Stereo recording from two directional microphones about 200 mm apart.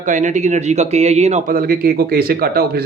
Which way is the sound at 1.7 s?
50° right (ahead or behind).